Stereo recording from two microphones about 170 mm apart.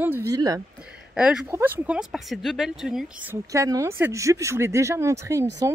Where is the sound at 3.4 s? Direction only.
20° right (ahead or behind).